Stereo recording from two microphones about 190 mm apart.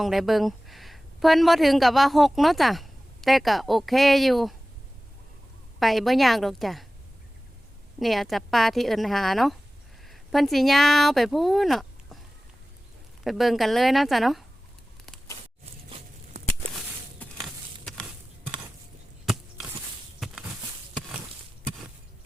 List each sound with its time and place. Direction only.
0.0 s speech: centre (ahead or behind)
5.8 s speech: centre (ahead or behind)
7.9 s speech: centre (ahead or behind)
13.2 s speech: centre (ahead or behind)
15.9 s patter: 35° right (ahead or behind)
19.2 s a sound: centre (ahead or behind)